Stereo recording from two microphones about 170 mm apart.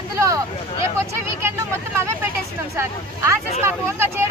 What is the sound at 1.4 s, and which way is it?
Speech, 15° right (ahead or behind).